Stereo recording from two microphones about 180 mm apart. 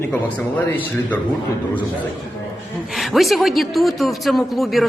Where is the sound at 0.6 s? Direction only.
10° left (ahead or behind).